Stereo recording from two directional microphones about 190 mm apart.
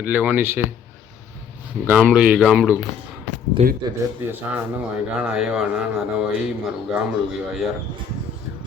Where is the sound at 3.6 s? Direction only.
35° right (ahead or behind).